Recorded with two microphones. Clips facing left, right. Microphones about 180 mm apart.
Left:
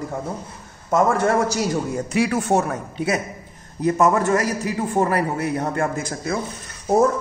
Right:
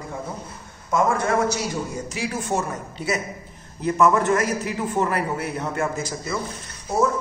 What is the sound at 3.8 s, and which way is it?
A man's voice, 40° left (ahead or behind).